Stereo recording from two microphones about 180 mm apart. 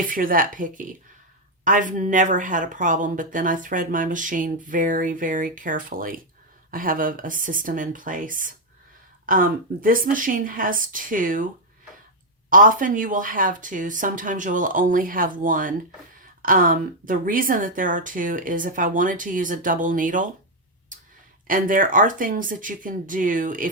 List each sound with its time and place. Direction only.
0.1 s speech: 50° right (ahead or behind)
12.5 s speech: 50° right (ahead or behind)
21.4 s speech: 50° right (ahead or behind)